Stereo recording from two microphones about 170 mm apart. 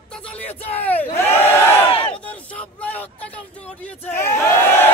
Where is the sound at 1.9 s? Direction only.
35° left (ahead or behind).